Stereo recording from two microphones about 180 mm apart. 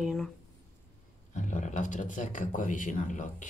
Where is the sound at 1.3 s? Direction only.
45° left (ahead or behind).